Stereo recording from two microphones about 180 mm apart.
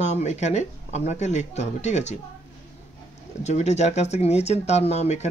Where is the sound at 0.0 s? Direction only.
40° left (ahead or behind).